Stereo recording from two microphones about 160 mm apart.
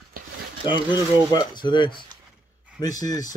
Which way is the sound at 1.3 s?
25° left (ahead or behind).